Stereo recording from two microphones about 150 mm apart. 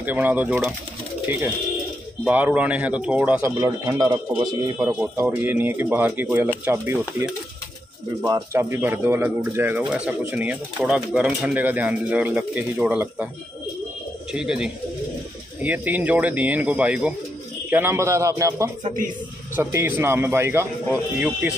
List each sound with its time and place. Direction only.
0.0 s speech: 10° right (ahead or behind)
2.2 s speech: 10° right (ahead or behind)
3.4 s a man's voice: 25° right (ahead or behind)
4.7 s speech: 5° right (ahead or behind)
5.1 s speech: 15° right (ahead or behind)
14.3 s a man's voice: 5° right (ahead or behind)